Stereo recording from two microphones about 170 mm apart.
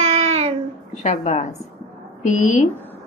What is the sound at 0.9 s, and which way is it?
A woman's voice, 45° left (ahead or behind).